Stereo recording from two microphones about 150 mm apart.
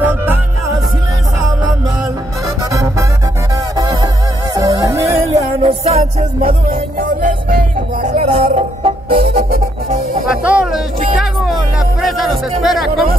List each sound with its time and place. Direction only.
0.0 s music: 15° right (ahead or behind)
2.7 s music: 20° right (ahead or behind)
5.6 s music: 40° right (ahead or behind)
9.2 s music: 80° right
10.4 s music: 5° right (ahead or behind)